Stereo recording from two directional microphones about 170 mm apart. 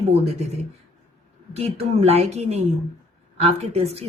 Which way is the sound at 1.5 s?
35° right (ahead or behind).